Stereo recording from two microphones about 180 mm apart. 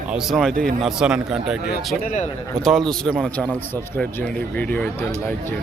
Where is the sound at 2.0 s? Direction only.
40° left (ahead or behind).